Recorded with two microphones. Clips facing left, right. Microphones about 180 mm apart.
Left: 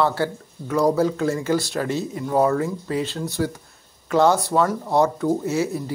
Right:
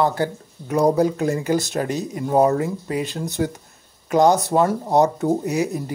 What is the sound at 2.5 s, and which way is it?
Speech, 20° right (ahead or behind).